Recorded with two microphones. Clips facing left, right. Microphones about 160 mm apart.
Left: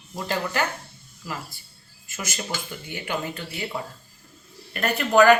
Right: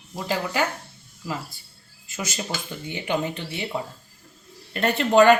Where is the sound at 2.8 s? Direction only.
20° right (ahead or behind).